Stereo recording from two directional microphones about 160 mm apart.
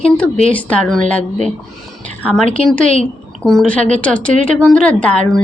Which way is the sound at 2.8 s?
50° right (ahead or behind).